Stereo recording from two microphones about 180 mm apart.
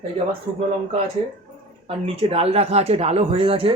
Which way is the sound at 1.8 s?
30° right (ahead or behind).